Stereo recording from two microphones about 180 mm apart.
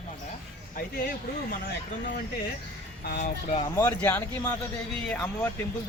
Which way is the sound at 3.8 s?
15° left (ahead or behind).